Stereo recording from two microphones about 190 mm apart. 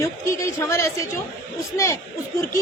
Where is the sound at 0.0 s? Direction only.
15° left (ahead or behind).